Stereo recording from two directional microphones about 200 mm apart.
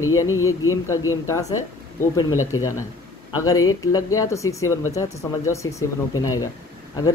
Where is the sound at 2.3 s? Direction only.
90° left.